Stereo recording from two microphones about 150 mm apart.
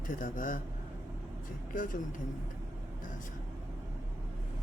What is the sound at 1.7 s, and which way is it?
Speech, 65° left (ahead or behind).